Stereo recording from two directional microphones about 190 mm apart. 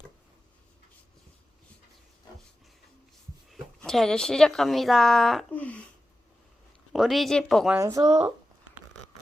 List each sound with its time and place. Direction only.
3.5 s speech: centre (ahead or behind)
6.9 s speech: centre (ahead or behind)
7.8 s speech: 15° right (ahead or behind)